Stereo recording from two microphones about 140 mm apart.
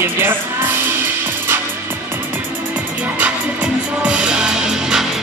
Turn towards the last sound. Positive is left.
turn(degrees=-5)  # may be behind; listen again after turning